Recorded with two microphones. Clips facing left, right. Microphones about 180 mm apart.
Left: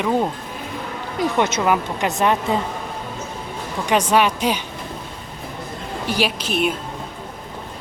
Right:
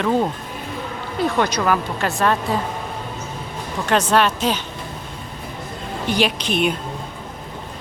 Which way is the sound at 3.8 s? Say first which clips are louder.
Even; 10° left (ahead or behind).